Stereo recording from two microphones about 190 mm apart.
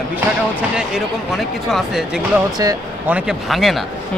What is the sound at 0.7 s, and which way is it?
Speech, centre (ahead or behind).